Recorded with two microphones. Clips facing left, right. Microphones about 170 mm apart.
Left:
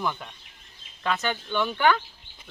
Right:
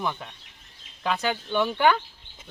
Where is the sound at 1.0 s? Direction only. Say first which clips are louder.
Right 1 dB; 10° right (ahead or behind).